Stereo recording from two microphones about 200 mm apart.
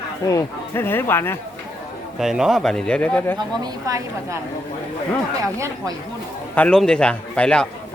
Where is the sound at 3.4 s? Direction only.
20° right (ahead or behind).